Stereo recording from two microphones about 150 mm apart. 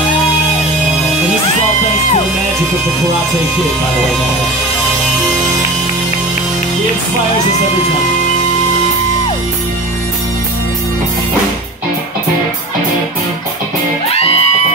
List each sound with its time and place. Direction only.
14.1 s music: 40° left (ahead or behind)